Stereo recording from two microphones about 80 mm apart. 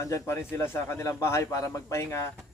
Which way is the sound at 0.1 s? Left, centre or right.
Left.